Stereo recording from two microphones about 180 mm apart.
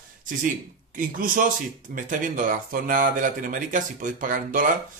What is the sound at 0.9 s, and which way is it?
Speech, 50° right (ahead or behind).